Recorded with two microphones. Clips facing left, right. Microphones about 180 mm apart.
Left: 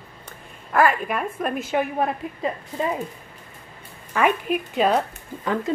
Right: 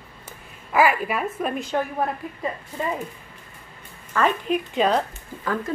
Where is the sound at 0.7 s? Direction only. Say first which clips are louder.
Even; 5° right (ahead or behind).